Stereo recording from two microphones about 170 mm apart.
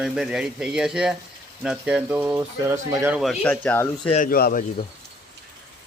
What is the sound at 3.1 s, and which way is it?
Speech, centre (ahead or behind).